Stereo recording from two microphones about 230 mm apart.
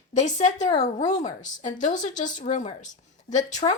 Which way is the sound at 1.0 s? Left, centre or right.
Centre.